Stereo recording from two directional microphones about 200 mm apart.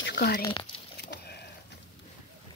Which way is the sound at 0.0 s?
55° left (ahead or behind).